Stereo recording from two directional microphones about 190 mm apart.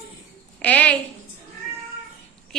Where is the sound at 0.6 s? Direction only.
5° left (ahead or behind).